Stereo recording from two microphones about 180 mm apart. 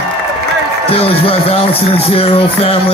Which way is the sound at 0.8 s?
30° left (ahead or behind).